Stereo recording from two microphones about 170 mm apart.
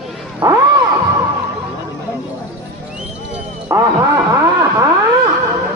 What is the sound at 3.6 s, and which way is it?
Vehicle, 15° right (ahead or behind).